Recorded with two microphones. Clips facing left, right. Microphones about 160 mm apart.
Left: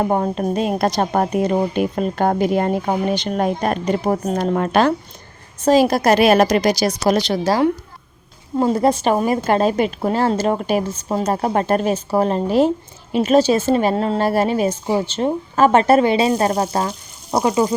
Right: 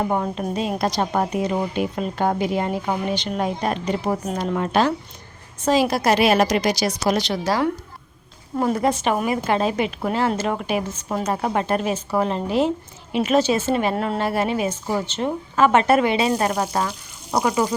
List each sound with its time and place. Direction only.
0.0 s speech: 45° left (ahead or behind)
5.6 s a woman's voice: 45° left (ahead or behind); by 17.7 s 30° left (ahead or behind)